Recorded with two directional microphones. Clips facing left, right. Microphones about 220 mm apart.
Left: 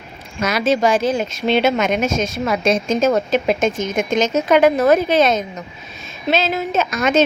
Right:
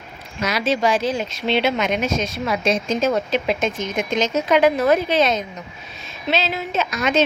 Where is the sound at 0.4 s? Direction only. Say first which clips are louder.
Left 3 dB; 45° left (ahead or behind).